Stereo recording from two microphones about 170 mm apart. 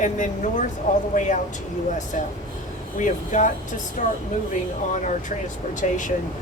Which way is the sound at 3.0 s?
45° left (ahead or behind).